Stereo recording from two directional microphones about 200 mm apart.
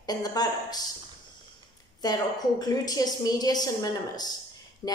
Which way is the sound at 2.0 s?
20° left (ahead or behind).